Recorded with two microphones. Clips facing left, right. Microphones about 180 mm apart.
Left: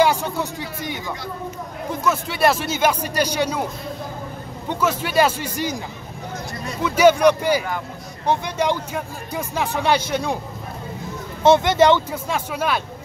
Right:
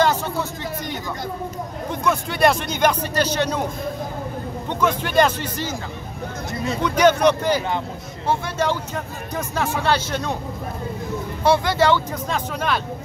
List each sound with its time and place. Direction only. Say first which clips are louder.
0.0 s speech: left 1 dB; 15° left (ahead or behind)
2.0 s speech: right 1 dB; centre (ahead or behind)
4.6 s speech: even; 10° left (ahead or behind)
6.8 s speech: left 2 dB; 10° left (ahead or behind)
11.4 s speech: left 4 dB; 20° left (ahead or behind)
12.1 s speech: even; 10° left (ahead or behind)